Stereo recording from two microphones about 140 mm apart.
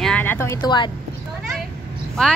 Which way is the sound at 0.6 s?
35° left (ahead or behind).